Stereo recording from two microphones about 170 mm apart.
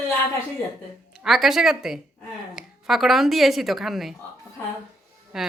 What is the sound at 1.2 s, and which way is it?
A woman's voice, centre (ahead or behind).